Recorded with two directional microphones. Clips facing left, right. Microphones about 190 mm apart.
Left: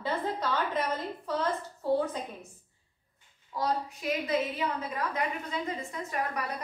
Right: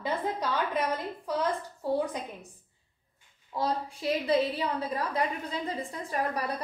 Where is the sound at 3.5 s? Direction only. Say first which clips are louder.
Even; 30° right (ahead or behind).